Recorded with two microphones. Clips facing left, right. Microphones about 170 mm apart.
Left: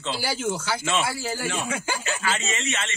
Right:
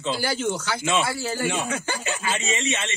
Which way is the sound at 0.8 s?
15° right (ahead or behind).